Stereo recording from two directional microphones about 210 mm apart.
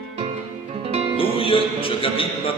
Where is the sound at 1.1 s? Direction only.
25° left (ahead or behind).